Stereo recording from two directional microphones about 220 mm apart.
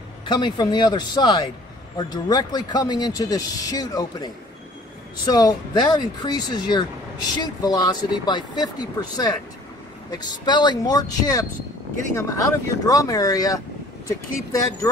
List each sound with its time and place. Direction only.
0.2 s speech: 20° left (ahead or behind)